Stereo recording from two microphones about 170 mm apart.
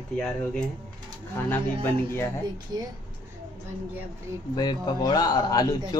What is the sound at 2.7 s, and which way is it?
Speech, 25° right (ahead or behind).